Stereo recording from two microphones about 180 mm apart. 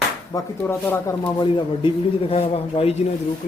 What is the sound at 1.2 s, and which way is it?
Speech, 25° left (ahead or behind).